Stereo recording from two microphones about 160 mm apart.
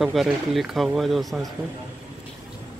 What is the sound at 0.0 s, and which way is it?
Speech, centre (ahead or behind).